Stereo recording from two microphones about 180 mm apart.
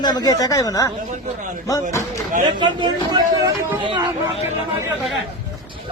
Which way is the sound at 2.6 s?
25° right (ahead or behind).